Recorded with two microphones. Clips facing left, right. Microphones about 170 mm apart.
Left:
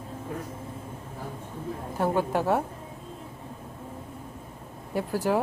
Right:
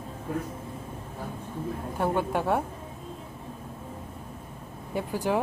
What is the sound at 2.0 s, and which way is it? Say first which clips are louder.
Speech: left 2 dB; 5° left (ahead or behind).